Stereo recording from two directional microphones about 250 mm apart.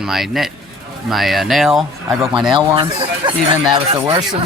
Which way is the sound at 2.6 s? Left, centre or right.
Centre.